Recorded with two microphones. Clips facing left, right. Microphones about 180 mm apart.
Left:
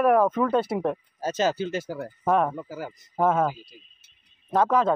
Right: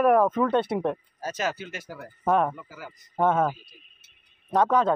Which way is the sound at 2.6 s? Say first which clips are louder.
Left 8 dB; 40° left (ahead or behind).